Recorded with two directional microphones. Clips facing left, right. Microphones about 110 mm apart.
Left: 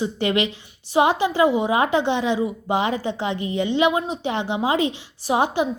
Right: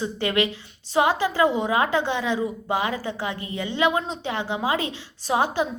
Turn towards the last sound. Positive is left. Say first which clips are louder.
# left 2 dB
turn(degrees=15)  # may be behind; listen again after turning